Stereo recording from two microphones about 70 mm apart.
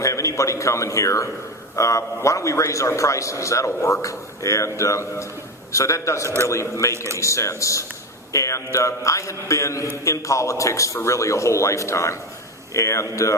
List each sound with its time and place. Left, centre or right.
0.0 s a man's voice: left
6.9 s speech: right
7.2 s a man's voice: left